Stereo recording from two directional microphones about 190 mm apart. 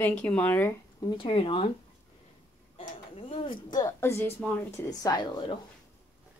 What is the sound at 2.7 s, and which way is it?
Speech, 30° left (ahead or behind).